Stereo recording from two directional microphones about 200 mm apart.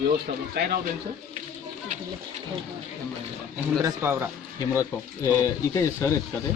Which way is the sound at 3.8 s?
15° right (ahead or behind).